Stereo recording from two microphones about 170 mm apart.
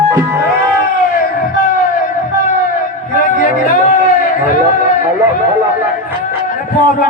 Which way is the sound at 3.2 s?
55° left (ahead or behind).